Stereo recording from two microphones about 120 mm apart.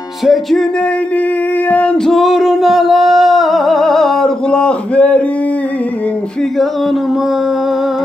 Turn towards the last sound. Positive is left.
turn(degrees=0)  # may be behind; listen again after turning